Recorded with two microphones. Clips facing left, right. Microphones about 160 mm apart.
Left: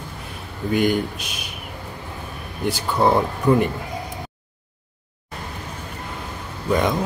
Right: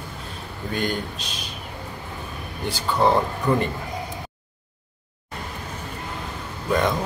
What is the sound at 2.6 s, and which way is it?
Speech, 10° left (ahead or behind).